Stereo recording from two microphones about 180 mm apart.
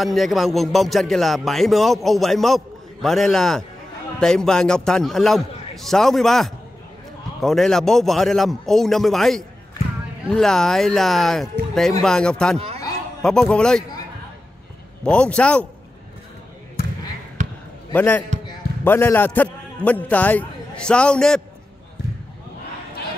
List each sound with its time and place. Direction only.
0.0 s speech: centre (ahead or behind)
12.5 s speech: 35° right (ahead or behind)
13.2 s speech: 5° left (ahead or behind)
15.0 s speech: 5° left (ahead or behind)
17.9 s a man's voice: 10° left (ahead or behind)